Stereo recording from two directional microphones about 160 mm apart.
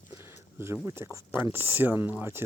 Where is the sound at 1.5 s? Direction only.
10° right (ahead or behind).